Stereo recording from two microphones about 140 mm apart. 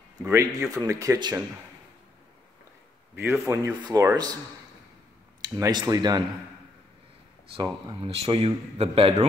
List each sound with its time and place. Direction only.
0.2 s speech: 20° right (ahead or behind)
3.2 s speech: 20° right (ahead or behind)
5.4 s speech: 30° right (ahead or behind)
7.6 s speech: 40° right (ahead or behind)